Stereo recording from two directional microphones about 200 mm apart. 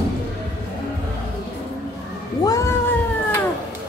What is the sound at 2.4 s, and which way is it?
Cat, 15° left (ahead or behind).